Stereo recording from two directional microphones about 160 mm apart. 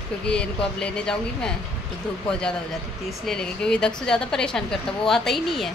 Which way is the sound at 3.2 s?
5° left (ahead or behind).